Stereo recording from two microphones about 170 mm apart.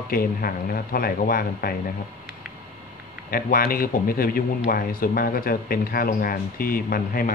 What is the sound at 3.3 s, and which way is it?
Speech, 60° left (ahead or behind).